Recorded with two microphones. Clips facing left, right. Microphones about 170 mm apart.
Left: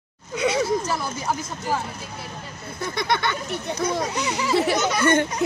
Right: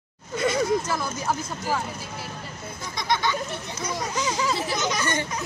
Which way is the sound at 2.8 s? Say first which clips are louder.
Left 2 dB; 60° left (ahead or behind).